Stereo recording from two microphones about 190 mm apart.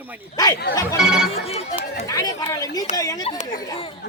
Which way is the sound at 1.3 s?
35° left (ahead or behind).